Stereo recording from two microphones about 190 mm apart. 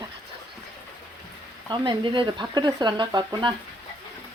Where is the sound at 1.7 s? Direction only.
25° right (ahead or behind).